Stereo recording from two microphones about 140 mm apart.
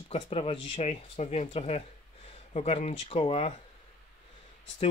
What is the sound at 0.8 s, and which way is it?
Speech, 55° left (ahead or behind).